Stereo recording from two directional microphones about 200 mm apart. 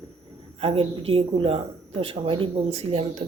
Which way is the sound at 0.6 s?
30° right (ahead or behind).